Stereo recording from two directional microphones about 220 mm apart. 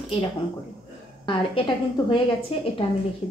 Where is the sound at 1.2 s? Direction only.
25° left (ahead or behind).